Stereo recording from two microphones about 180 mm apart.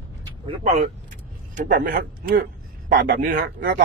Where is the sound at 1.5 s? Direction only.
55° right (ahead or behind).